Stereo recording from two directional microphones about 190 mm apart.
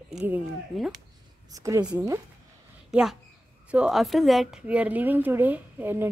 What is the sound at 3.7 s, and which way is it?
Speech, 5° right (ahead or behind).